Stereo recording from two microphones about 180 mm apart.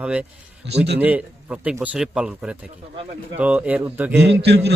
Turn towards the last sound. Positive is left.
turn(degrees=-70)  # may be behind; listen again after turning